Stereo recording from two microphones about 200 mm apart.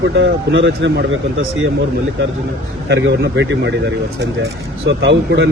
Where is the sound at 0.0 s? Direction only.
65° right (ahead or behind).